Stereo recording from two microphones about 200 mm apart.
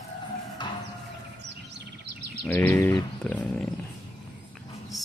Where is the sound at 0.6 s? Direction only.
20° left (ahead or behind).